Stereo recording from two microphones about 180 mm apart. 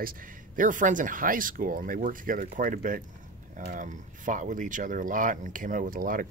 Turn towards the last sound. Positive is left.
turn(degrees=-50)  # may be behind; listen again after turning